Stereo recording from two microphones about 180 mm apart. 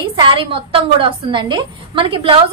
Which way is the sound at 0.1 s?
30° right (ahead or behind).